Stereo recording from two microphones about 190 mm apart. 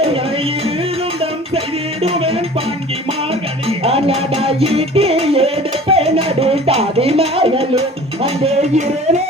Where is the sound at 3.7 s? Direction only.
30° right (ahead or behind).